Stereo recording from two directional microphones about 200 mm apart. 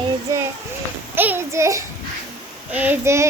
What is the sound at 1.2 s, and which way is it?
A child's voice, 10° right (ahead or behind).